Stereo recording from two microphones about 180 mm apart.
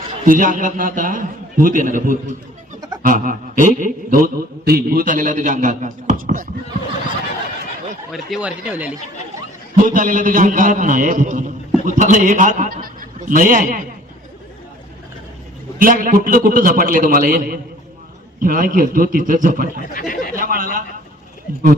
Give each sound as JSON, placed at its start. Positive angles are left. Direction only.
{"t": 0.3, "sound": "a man's voice", "side_deg": -50}
{"t": 8.1, "sound": "speech", "side_deg": -5}
{"t": 9.7, "sound": "a man's voice", "side_deg": -45}
{"t": 15.8, "sound": "a man's voice", "side_deg": -50}
{"t": 19.8, "sound": "speech", "side_deg": 50}
{"t": 20.3, "sound": "a sound", "side_deg": -50}